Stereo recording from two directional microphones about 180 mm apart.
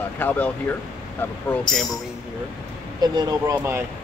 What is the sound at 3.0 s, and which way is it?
Speech, 20° right (ahead or behind).